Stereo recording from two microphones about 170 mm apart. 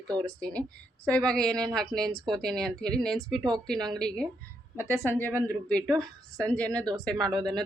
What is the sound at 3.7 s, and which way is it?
Speech, 25° right (ahead or behind).